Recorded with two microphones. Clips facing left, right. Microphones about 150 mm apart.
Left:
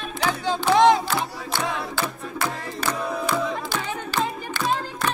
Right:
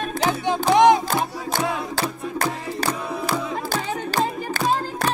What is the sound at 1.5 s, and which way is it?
Music, 40° right (ahead or behind).